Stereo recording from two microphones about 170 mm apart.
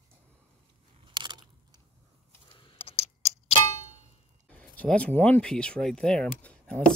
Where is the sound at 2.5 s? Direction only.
30° left (ahead or behind).